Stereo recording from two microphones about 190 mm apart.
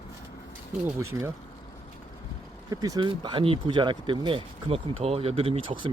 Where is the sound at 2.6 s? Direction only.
20° right (ahead or behind).